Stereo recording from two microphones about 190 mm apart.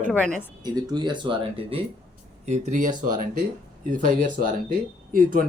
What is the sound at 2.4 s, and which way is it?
Speech, 40° right (ahead or behind).